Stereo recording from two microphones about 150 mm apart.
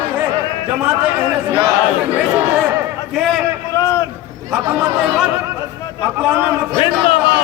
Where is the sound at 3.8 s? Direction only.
20° left (ahead or behind).